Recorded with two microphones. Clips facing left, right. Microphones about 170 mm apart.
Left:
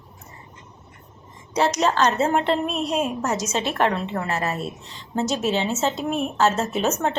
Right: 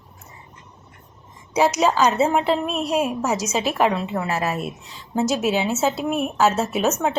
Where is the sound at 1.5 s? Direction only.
10° right (ahead or behind).